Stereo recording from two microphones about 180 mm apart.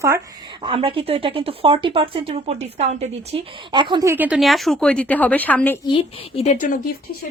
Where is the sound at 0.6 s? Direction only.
30° right (ahead or behind).